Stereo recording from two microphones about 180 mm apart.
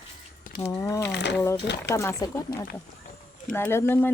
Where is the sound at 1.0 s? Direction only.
70° left (ahead or behind).